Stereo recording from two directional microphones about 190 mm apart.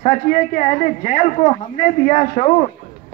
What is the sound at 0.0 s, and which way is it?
Speech, 35° left (ahead or behind).